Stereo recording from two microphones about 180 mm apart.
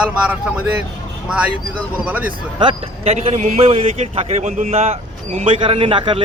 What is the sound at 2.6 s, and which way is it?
A man's voice, 30° right (ahead or behind).